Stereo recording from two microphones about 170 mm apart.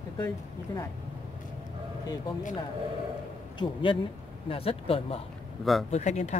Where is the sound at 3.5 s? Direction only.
30° left (ahead or behind).